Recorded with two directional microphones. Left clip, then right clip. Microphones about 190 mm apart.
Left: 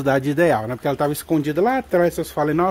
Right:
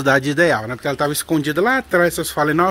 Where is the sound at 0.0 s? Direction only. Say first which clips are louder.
Right 3 dB; 10° left (ahead or behind).